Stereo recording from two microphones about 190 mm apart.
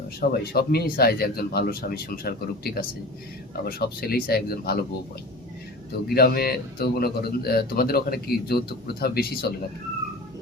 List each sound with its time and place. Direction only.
0.2 s speech: 55° left (ahead or behind)
6.1 s a man's voice: 55° left (ahead or behind)